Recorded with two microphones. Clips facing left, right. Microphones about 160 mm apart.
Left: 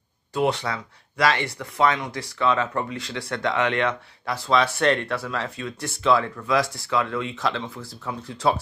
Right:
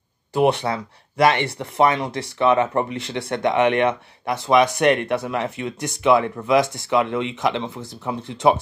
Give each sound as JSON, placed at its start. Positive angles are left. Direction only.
{"t": 0.3, "sound": "speech", "side_deg": -25}